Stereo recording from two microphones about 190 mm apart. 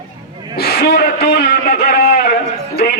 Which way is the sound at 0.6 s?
55° left (ahead or behind).